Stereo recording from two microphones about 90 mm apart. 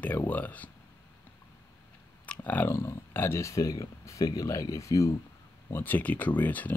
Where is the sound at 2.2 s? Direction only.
15° left (ahead or behind); by 5.2 s 35° left (ahead or behind).